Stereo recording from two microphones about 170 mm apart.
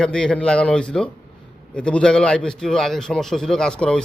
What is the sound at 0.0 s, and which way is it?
A man's voice, 5° left (ahead or behind).